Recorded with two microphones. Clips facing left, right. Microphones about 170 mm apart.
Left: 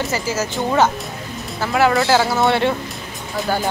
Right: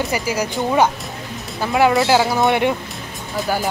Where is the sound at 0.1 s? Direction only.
15° right (ahead or behind).